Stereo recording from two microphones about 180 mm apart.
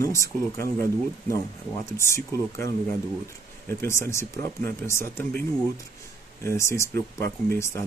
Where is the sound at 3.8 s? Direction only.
15° left (ahead or behind).